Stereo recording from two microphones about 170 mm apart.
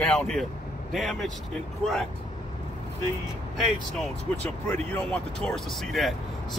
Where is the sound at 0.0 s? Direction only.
5° left (ahead or behind).